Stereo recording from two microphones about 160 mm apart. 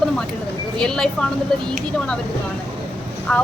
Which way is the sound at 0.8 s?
5° left (ahead or behind).